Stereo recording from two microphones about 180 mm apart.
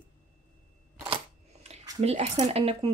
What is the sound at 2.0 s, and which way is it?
Speech, 35° right (ahead or behind).